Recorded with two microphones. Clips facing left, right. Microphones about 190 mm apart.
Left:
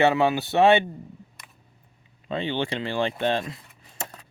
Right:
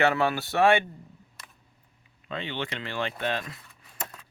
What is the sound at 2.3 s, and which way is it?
Speech, 30° left (ahead or behind).